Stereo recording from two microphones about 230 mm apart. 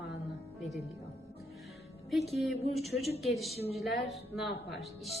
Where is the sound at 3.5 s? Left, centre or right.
Left.